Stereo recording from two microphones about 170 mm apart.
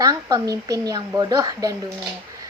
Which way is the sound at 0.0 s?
20° right (ahead or behind).